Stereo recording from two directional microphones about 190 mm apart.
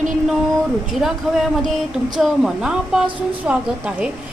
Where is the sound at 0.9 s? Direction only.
Centre (ahead or behind).